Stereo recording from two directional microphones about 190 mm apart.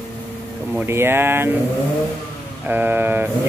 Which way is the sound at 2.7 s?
10° right (ahead or behind).